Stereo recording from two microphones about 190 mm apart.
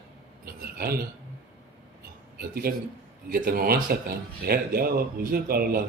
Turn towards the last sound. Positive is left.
turn(degrees=-50)  # may be behind; listen again after turning